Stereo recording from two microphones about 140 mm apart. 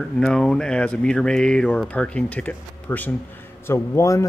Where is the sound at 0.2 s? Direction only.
5° left (ahead or behind).